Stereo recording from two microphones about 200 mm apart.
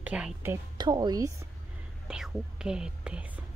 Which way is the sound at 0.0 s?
5° right (ahead or behind).